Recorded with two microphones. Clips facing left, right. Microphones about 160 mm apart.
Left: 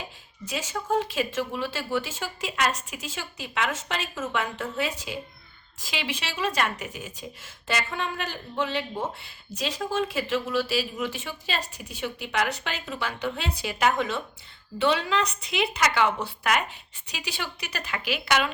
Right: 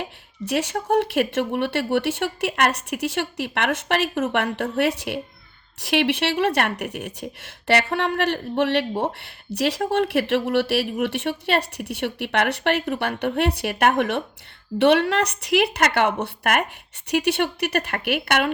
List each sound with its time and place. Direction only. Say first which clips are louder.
0.0 s a woman's voice: right 8 dB; 65° right (ahead or behind)